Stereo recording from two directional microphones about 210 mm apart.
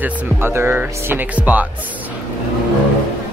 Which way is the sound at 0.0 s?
10° right (ahead or behind).